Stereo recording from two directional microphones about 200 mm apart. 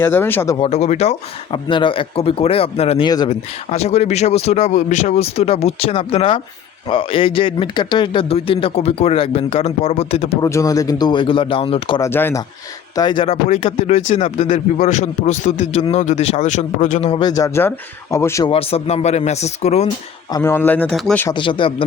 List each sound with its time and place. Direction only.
0.0 s speech: 10° left (ahead or behind)
0.6 s speech: 30° left (ahead or behind)
10.4 s speech: 15° left (ahead or behind)
12.0 s speech: 15° left (ahead or behind)
13.0 s speech: 25° left (ahead or behind)
18.5 s speech: 30° left (ahead or behind)
20.3 s speech: 10° left (ahead or behind)
21.2 s speech: 25° left (ahead or behind)